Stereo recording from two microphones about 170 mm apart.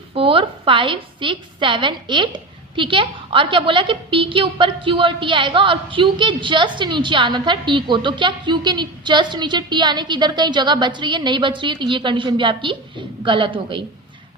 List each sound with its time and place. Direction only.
0.1 s a woman's voice: 30° right (ahead or behind)